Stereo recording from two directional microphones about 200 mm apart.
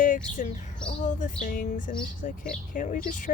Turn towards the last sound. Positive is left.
turn(degrees=40)  # may be behind; listen again after turning